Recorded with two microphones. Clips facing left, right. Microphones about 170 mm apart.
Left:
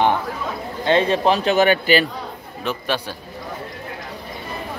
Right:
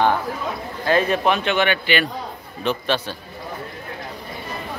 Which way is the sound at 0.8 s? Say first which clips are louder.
Left 2 dB; 25° left (ahead or behind).